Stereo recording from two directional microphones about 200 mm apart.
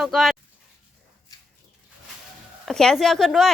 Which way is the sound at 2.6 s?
5° left (ahead or behind).